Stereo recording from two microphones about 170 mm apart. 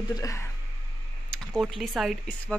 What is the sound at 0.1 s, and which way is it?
Speech, 20° left (ahead or behind).